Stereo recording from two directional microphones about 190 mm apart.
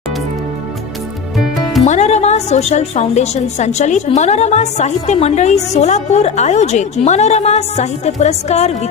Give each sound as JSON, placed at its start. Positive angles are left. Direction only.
{"t": 1.9, "sound": "a woman's voice", "side_deg": 35}